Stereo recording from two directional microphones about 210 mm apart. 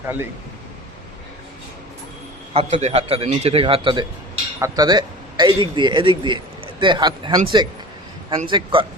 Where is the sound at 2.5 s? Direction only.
30° right (ahead or behind).